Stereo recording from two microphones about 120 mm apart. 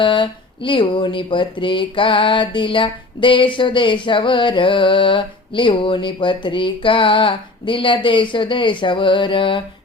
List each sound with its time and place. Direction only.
0.0 s speech: 45° left (ahead or behind)